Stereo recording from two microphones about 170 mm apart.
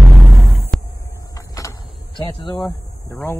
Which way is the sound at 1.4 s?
20° left (ahead or behind).